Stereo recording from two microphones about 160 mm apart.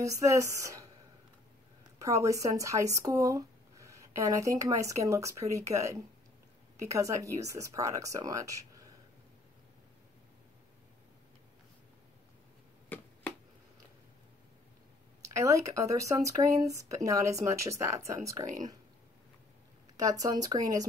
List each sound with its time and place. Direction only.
0.0 s speech: 20° right (ahead or behind)
2.0 s speech: 20° right (ahead or behind)
12.9 s a sound: 10° left (ahead or behind)
15.7 s speech: 20° right (ahead or behind)
20.0 s speech: 20° right (ahead or behind)